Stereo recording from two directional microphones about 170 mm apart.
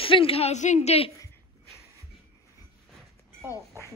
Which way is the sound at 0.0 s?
30° left (ahead or behind).